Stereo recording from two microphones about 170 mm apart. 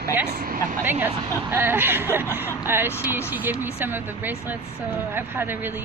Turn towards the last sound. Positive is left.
turn(degrees=-10)  # may be behind; listen again after turning